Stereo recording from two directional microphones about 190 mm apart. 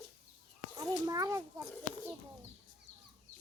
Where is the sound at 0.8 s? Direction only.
20° right (ahead or behind).